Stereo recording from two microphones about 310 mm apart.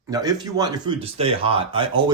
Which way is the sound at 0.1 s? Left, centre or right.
Centre.